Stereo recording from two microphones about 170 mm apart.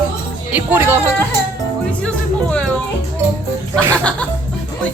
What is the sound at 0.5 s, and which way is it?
Speech, 10° right (ahead or behind).